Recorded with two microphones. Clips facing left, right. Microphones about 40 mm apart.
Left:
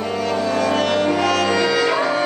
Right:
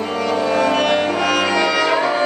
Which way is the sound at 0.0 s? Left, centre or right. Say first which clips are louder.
Right 2 dB; centre.